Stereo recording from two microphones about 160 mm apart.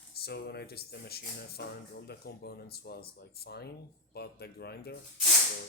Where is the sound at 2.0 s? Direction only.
90° left.